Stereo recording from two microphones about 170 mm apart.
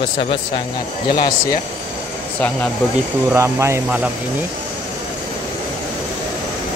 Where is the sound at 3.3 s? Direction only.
15° right (ahead or behind).